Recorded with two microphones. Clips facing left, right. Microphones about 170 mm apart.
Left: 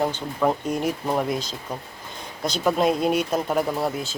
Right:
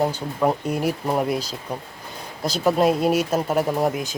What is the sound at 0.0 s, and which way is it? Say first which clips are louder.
Speech: right 1 dB; 10° right (ahead or behind).